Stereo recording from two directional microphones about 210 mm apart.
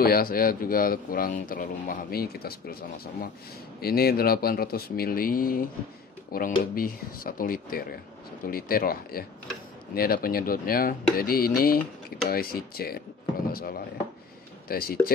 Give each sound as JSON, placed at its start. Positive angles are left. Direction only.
{"t": 0.0, "sound": "speech", "side_deg": 45}